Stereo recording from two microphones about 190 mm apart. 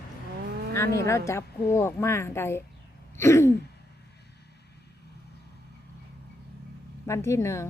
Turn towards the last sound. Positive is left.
turn(degrees=15)  # may be behind; listen again after turning